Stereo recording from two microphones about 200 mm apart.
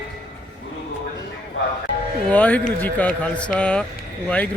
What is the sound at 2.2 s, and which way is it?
Speech, 5° left (ahead or behind).